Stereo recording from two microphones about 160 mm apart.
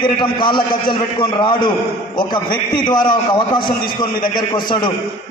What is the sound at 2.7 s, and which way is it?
Speech, 30° left (ahead or behind).